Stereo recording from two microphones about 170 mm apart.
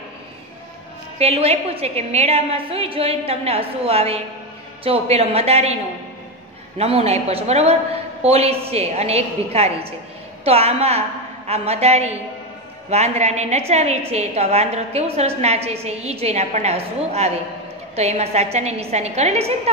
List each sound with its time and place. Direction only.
1.1 s a woman's voice: 35° right (ahead or behind)
6.8 s a woman's voice: 35° right (ahead or behind)